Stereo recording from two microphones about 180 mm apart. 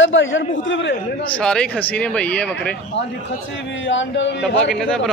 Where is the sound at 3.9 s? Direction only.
85° left.